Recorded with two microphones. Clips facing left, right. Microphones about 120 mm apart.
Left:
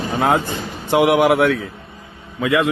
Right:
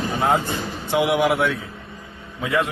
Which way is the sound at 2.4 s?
90° left.